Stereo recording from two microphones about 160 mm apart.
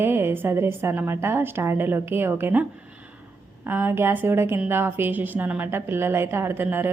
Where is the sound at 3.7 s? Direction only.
15° right (ahead or behind).